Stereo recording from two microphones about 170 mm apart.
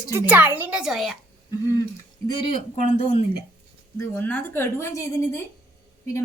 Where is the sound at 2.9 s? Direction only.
40° left (ahead or behind).